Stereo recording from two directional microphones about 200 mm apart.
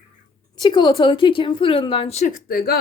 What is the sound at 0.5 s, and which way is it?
A woman's voice, 20° left (ahead or behind).